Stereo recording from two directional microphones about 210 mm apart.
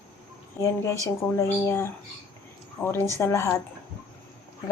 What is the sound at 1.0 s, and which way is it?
A woman's voice, 10° left (ahead or behind).